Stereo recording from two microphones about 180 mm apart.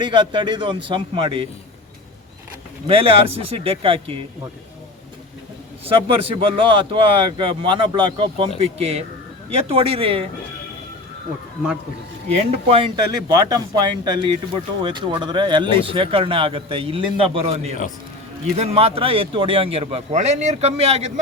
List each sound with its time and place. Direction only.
0.0 s speech: 25° right (ahead or behind)
2.8 s speech: 30° right (ahead or behind)
5.8 s speech: 30° right (ahead or behind)
12.6 s speech: 30° right (ahead or behind)